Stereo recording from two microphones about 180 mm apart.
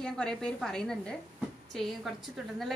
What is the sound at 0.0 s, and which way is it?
A woman's voice, 5° left (ahead or behind).